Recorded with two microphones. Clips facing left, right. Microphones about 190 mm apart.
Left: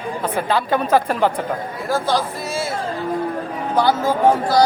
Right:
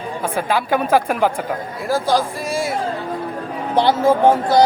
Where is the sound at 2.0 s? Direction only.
10° right (ahead or behind).